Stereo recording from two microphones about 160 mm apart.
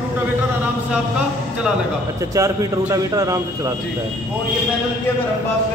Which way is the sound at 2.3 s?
20° right (ahead or behind).